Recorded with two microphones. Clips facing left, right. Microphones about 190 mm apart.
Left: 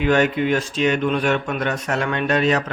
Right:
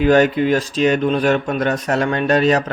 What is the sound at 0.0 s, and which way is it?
Speech, 35° right (ahead or behind).